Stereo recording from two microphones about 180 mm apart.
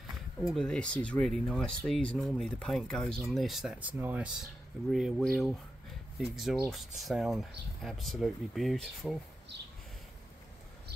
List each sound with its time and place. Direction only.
0.5 s speech: 5° left (ahead or behind)